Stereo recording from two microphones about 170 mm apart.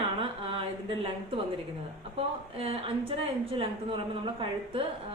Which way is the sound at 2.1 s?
35° right (ahead or behind).